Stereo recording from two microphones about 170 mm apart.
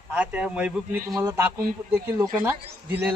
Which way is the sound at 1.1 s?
20° right (ahead or behind).